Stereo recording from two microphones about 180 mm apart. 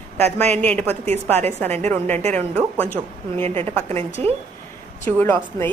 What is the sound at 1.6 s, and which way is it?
Speech, 35° right (ahead or behind).